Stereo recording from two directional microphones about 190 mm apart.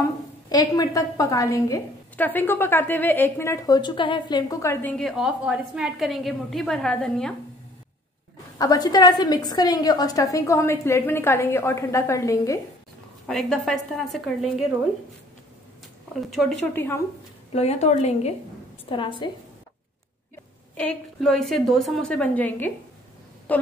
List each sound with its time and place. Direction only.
0.0 s a woman's voice: 20° left (ahead or behind)
4.9 s a woman's voice: centre (ahead or behind)
8.5 s a woman's voice: 20° left (ahead or behind)
13.3 s a woman's voice: 5° left (ahead or behind)
16.2 s a woman's voice: centre (ahead or behind)
16.7 s a woman's voice: 10° left (ahead or behind)
17.5 s a woman's voice: 35° left (ahead or behind)
18.9 s a woman's voice: 25° left (ahead or behind)
20.7 s a woman's voice: 5° left (ahead or behind)